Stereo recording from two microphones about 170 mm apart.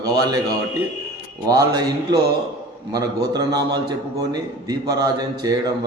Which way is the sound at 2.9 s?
20° right (ahead or behind).